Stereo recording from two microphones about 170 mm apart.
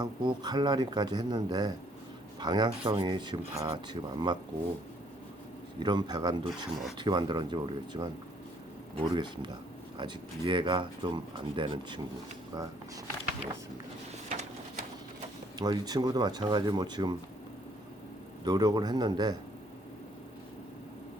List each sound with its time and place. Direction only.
0.0 s speech: 25° right (ahead or behind)
5.8 s speech: 25° right (ahead or behind)
6.5 s speech: centre (ahead or behind)
6.9 s speech: 25° right (ahead or behind)
14.3 s a sound: 50° right (ahead or behind)
15.5 s speech: 25° right (ahead or behind)
18.4 s speech: 25° right (ahead or behind)